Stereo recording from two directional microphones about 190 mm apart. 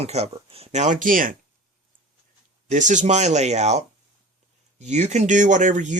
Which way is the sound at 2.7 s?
40° right (ahead or behind).